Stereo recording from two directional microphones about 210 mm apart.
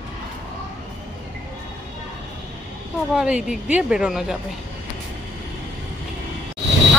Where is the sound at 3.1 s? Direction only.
5° right (ahead or behind).